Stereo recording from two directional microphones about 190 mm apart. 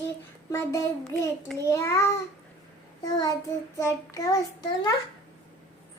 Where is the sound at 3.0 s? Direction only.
20° left (ahead or behind).